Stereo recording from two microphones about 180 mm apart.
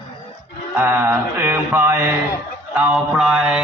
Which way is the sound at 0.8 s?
10° right (ahead or behind).